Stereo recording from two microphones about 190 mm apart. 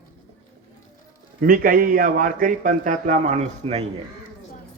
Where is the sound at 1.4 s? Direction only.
50° right (ahead or behind).